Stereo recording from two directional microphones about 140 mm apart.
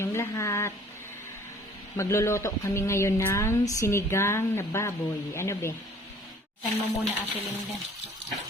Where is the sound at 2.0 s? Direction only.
20° left (ahead or behind).